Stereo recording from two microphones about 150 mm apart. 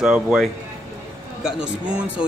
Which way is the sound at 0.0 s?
5° right (ahead or behind).